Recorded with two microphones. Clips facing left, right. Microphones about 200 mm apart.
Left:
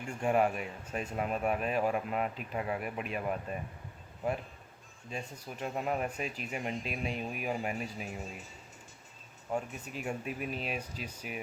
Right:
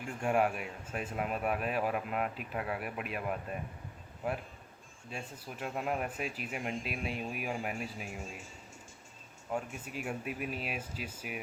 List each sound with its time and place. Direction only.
0.1 s speech: 5° right (ahead or behind)
5.1 s speech: 5° right (ahead or behind)
9.5 s speech: 5° right (ahead or behind)